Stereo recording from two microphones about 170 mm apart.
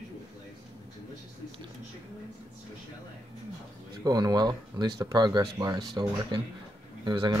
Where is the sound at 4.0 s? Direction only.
25° right (ahead or behind).